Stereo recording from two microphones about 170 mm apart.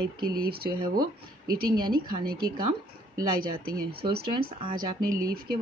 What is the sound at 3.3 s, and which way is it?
Speech, 65° right (ahead or behind).